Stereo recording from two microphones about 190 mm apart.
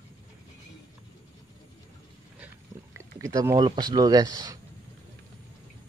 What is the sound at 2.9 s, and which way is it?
Speech, 15° right (ahead or behind).